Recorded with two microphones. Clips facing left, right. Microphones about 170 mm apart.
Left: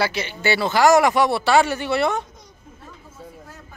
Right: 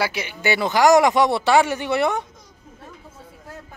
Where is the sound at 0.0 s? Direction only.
10° right (ahead or behind).